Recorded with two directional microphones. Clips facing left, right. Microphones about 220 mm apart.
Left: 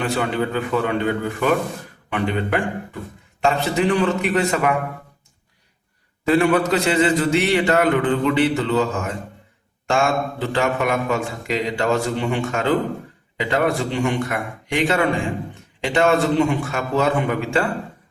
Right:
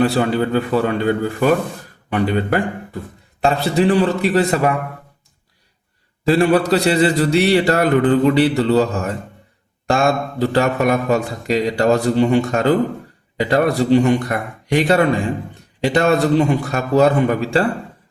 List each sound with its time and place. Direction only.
0.0 s speech: 35° right (ahead or behind)
6.2 s speech: 35° right (ahead or behind)